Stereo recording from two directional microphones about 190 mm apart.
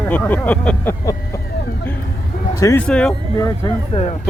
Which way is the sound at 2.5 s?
15° left (ahead or behind).